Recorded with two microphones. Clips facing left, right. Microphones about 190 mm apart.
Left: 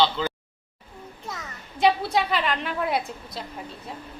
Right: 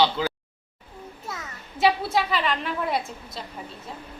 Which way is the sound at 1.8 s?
Centre (ahead or behind).